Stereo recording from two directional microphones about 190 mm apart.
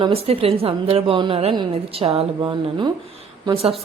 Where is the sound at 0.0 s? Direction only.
30° right (ahead or behind).